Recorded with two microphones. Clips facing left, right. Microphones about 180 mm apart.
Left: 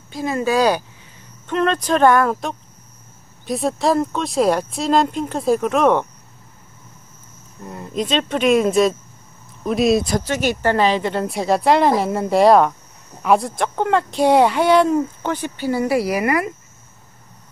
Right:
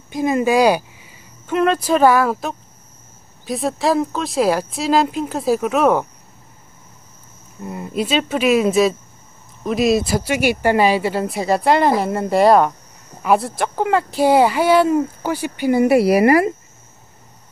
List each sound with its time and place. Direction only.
0.1 s speech: 15° right (ahead or behind)
7.6 s speech: 10° right (ahead or behind)
16.1 s speech: 30° right (ahead or behind)